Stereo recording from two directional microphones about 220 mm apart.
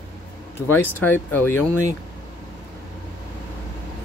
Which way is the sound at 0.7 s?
10° left (ahead or behind).